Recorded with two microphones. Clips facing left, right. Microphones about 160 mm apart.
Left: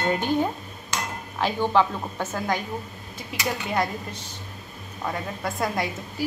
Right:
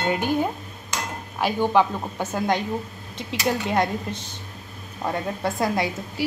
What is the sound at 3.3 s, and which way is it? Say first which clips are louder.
Speech: right 4 dB; 25° right (ahead or behind).